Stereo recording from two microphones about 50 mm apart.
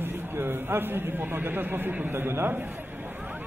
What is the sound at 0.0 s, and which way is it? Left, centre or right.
A man's voice, right.